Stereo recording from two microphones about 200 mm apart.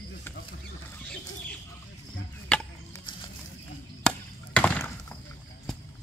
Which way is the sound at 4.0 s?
5° left (ahead or behind).